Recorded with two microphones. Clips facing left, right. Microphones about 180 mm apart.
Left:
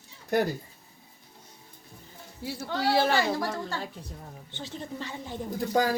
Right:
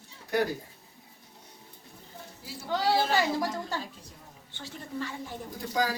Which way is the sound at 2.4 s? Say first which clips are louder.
Even; 65° left (ahead or behind).